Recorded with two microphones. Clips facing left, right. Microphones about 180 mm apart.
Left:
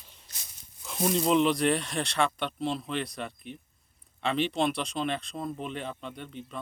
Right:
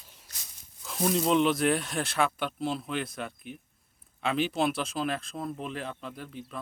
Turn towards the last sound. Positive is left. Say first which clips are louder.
# even
turn(degrees=-5)  # may be behind; listen again after turning